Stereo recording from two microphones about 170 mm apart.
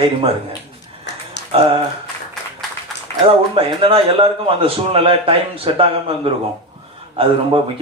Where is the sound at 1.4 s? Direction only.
90° left.